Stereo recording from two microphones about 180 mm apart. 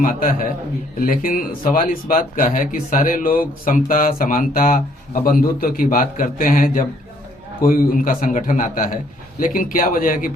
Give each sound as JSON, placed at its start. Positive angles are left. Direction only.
{"t": 0.0, "sound": "speech", "side_deg": 50}